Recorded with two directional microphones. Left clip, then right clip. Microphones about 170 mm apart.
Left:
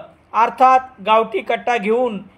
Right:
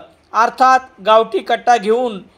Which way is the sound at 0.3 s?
55° right (ahead or behind).